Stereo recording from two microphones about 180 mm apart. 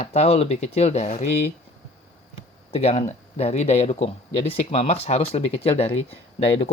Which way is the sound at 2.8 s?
35° left (ahead or behind).